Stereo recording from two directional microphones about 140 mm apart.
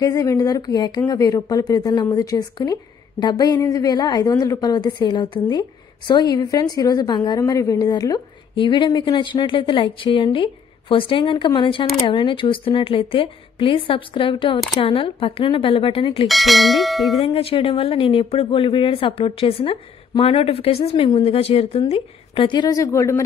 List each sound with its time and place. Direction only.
0.0 s a woman's voice: 25° left (ahead or behind)
16.3 s speech: centre (ahead or behind)
17.2 s a woman's voice: 45° left (ahead or behind); by 23.2 s 20° left (ahead or behind)